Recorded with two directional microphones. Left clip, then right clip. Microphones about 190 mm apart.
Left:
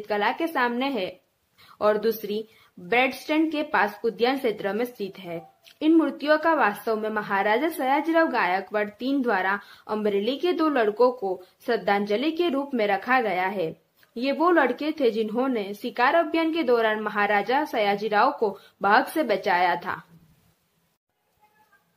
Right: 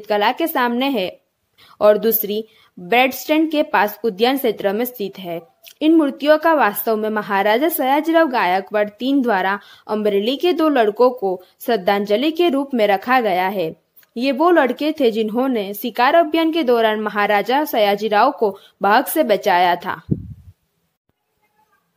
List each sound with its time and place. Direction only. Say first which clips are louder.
0.0 s a woman's voice: right 7 dB; 45° right (ahead or behind)